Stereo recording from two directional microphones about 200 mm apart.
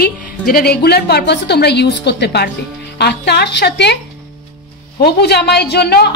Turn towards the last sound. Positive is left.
turn(degrees=50)  # may be behind; listen again after turning